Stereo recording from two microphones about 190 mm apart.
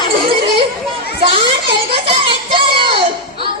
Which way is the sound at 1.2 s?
25° right (ahead or behind).